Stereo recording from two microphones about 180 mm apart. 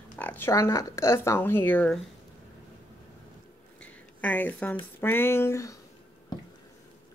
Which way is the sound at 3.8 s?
10° left (ahead or behind).